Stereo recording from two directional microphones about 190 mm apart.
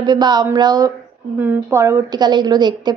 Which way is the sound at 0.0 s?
20° right (ahead or behind).